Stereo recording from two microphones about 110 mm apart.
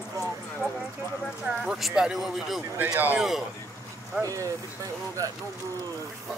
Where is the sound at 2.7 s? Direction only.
15° right (ahead or behind).